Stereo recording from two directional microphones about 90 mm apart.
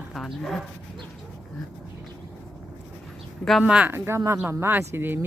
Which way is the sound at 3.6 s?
15° right (ahead or behind).